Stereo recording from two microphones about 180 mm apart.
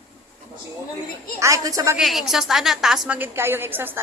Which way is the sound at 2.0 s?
Centre (ahead or behind).